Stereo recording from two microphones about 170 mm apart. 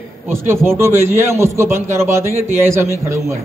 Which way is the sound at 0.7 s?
15° right (ahead or behind).